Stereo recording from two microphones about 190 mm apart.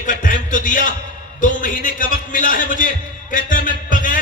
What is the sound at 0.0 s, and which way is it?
A man's voice, 45° left (ahead or behind).